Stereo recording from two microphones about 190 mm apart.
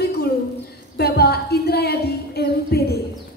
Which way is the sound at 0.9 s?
55° left (ahead or behind).